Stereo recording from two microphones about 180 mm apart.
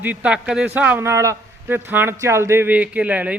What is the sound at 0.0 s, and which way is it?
A man's voice, 10° right (ahead or behind).